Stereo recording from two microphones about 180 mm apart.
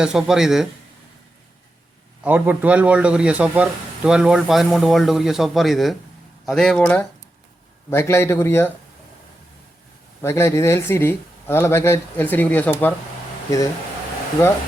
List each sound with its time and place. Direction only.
0.0 s a man's voice: 5° right (ahead or behind)
2.2 s a man's voice: 10° right (ahead or behind); by 8.7 s 15° left (ahead or behind)
10.2 s speech: 15° left (ahead or behind)